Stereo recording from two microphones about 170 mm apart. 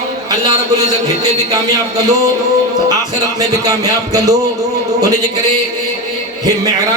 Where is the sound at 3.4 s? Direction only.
20° right (ahead or behind).